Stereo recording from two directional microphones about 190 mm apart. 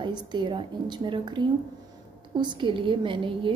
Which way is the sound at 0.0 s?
25° right (ahead or behind).